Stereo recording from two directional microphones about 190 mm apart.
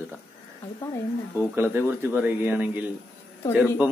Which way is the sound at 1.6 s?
10° right (ahead or behind).